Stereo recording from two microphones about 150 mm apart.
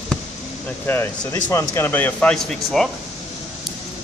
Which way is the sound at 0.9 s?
15° left (ahead or behind).